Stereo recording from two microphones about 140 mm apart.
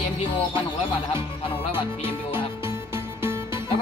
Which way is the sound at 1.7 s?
15° right (ahead or behind).